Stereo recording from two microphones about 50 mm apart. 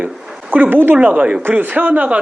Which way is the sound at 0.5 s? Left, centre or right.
Right.